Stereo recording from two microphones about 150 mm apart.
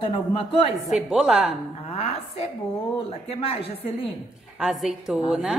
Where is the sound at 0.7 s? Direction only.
Centre (ahead or behind).